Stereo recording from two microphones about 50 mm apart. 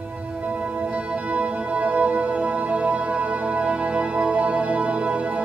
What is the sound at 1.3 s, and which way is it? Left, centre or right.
Music, right.